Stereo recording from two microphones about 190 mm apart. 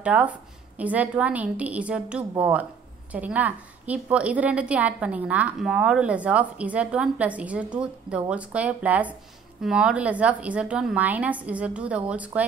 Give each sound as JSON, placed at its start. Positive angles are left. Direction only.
{"t": 0.0, "sound": "a woman's voice", "side_deg": -5}